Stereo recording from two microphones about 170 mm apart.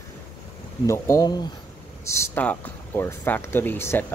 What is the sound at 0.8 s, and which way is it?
Speech, 15° left (ahead or behind).